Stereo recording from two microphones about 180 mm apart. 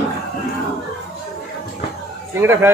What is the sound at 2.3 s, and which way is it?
Speech, 15° right (ahead or behind).